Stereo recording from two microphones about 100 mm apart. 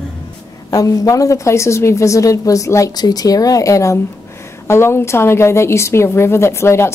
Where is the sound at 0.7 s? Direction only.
35° left (ahead or behind).